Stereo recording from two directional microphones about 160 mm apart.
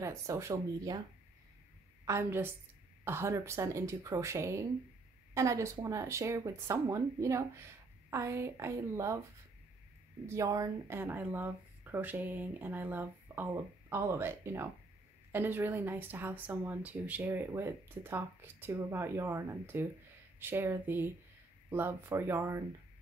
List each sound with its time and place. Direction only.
0.0 s speech: 20° right (ahead or behind)
2.0 s speech: 15° right (ahead or behind)
10.2 s speech: 20° right (ahead or behind)